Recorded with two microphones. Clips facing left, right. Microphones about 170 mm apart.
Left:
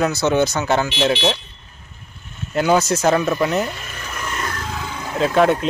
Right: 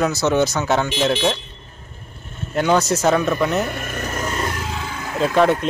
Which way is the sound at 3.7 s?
55° right (ahead or behind).